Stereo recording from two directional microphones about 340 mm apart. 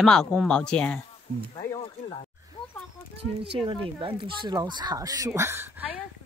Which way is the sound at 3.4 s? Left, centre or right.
Centre.